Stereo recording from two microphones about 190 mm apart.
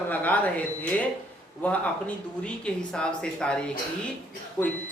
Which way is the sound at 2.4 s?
5° left (ahead or behind).